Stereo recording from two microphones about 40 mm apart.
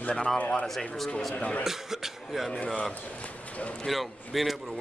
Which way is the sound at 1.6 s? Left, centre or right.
Centre.